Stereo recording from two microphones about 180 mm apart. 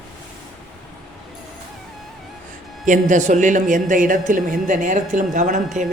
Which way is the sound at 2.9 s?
45° right (ahead or behind).